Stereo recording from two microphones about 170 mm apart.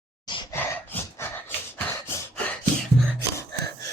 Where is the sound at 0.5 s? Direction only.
10° left (ahead or behind).